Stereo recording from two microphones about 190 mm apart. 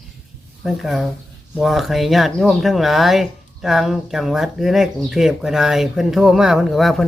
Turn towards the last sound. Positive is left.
turn(degrees=0)  # may be behind; listen again after turning